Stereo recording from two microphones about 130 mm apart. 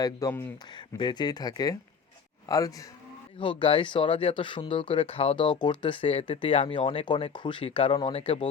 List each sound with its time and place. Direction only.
0.0 s speech: 25° left (ahead or behind)
3.6 s speech: 40° left (ahead or behind)